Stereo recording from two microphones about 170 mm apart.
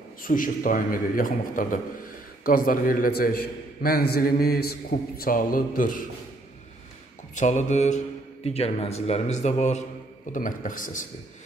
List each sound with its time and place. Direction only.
0.2 s a man's voice: 55° left (ahead or behind)
7.3 s a man's voice: 45° left (ahead or behind)